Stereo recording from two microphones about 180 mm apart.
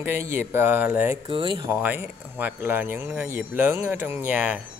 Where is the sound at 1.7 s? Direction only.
10° right (ahead or behind).